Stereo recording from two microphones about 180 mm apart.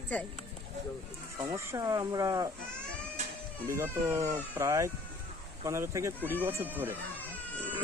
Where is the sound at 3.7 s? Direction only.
15° right (ahead or behind).